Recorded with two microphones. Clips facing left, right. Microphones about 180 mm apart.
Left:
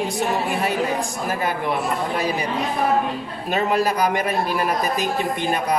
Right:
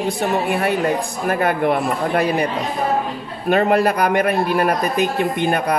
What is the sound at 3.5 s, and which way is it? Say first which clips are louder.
A man's voice: right 5 dB; 60° right (ahead or behind).